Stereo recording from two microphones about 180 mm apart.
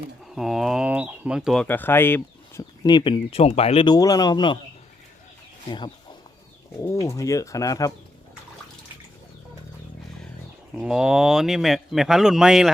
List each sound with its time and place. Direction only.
0.3 s a man's voice: centre (ahead or behind)
1.6 s speech: 10° left (ahead or behind)
2.8 s speech: 25° left (ahead or behind)
6.8 s speech: 15° left (ahead or behind)
10.8 s a man's voice: 5° right (ahead or behind)